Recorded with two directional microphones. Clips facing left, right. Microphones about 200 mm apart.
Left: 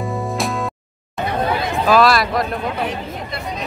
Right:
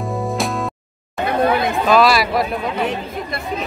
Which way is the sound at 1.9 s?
Centre (ahead or behind).